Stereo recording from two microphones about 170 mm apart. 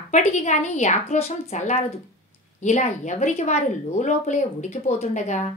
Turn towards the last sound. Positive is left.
turn(degrees=45)  # may be behind; listen again after turning